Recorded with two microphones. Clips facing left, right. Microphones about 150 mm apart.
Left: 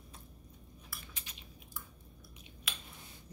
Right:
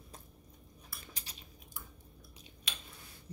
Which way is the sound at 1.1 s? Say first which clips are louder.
Right 1 dB; 40° right (ahead or behind).